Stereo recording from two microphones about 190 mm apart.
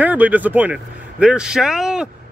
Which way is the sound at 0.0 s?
10° right (ahead or behind).